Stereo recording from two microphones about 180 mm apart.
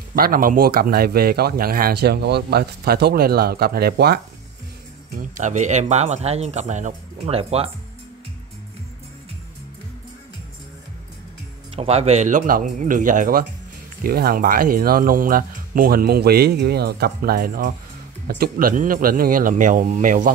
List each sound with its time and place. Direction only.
0.1 s speech: 55° right (ahead or behind)
5.1 s speech: 40° right (ahead or behind)
11.7 s speech: 35° right (ahead or behind)